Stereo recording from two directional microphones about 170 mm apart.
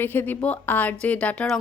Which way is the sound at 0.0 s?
10° left (ahead or behind).